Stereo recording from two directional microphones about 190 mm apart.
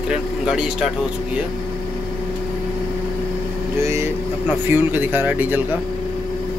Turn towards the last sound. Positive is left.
turn(degrees=-10)  # may be behind; listen again after turning